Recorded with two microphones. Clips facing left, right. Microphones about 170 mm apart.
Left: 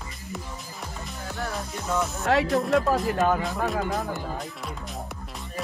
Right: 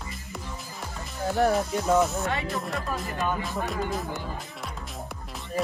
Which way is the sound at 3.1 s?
90° left.